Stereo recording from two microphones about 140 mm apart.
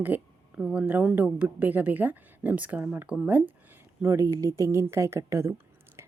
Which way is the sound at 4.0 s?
20° right (ahead or behind).